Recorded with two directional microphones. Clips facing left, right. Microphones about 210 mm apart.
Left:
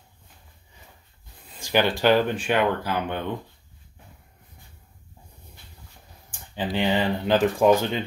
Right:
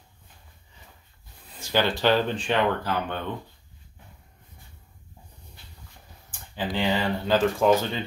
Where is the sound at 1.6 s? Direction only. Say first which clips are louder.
Left 2 dB; 15° left (ahead or behind).